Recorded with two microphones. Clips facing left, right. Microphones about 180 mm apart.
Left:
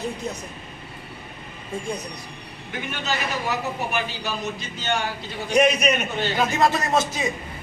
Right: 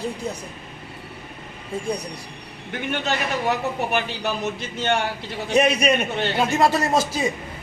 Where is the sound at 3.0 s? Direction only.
60° right (ahead or behind).